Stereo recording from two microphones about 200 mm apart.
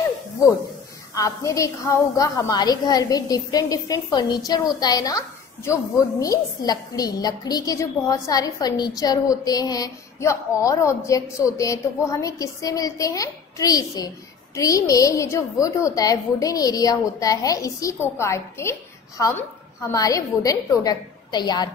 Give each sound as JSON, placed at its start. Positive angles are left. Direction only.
{"t": 1.1, "sound": "a woman's voice", "side_deg": 15}